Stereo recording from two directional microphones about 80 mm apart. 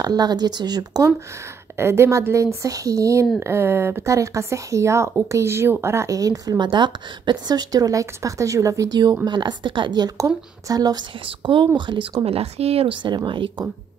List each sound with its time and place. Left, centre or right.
0.0 s speech: right
1.8 s speech: right
6.6 s a woman's voice: right
9.2 s a woman's voice: right
10.1 s a woman's voice: right
11.4 s speech: right